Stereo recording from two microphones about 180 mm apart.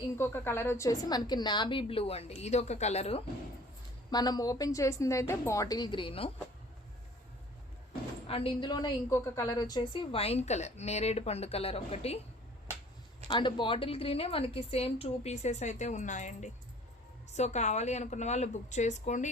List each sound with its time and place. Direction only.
0.2 s a woman's voice: 15° left (ahead or behind); by 3.2 s 35° left (ahead or behind)
4.1 s a woman's voice: 20° left (ahead or behind)
8.3 s a woman's voice: 30° left (ahead or behind)
13.2 s a woman's voice: 25° left (ahead or behind)